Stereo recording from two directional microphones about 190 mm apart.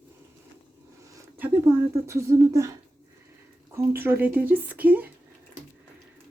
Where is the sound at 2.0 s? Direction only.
15° right (ahead or behind).